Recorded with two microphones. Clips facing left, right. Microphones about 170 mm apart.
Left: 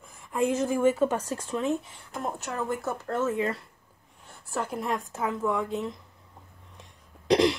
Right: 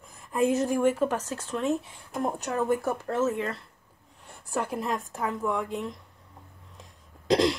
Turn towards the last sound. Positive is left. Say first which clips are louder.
# left 1 dB
turn(degrees=0)  # may be behind; listen again after turning